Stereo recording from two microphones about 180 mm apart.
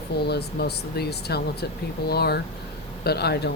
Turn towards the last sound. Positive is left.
turn(degrees=65)  # may be behind; listen again after turning